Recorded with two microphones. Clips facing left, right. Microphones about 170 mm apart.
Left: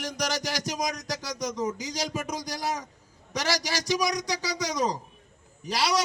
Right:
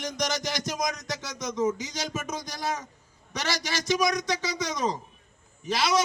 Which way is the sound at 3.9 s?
10° left (ahead or behind).